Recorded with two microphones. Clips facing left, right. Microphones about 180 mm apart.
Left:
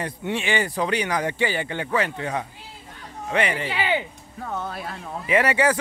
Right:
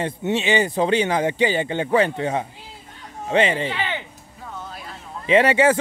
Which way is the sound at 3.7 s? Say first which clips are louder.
Left 3 dB; 10° left (ahead or behind).